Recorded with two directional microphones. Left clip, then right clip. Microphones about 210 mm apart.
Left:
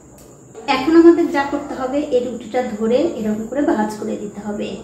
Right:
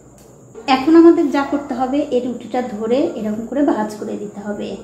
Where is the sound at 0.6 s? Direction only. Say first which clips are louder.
Right 1 dB; 40° right (ahead or behind).